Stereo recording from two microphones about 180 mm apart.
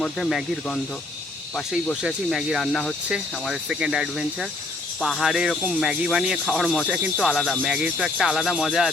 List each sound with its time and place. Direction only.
0.0 s speech: centre (ahead or behind)